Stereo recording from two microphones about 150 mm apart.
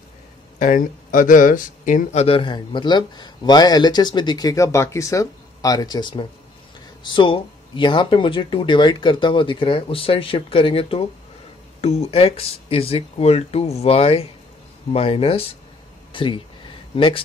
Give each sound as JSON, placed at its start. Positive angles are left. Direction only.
{"t": 0.6, "sound": "speech", "side_deg": 60}
{"t": 2.2, "sound": "speech", "side_deg": 35}